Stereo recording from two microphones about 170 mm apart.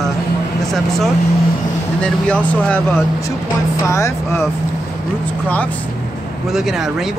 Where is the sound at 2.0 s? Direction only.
5° left (ahead or behind).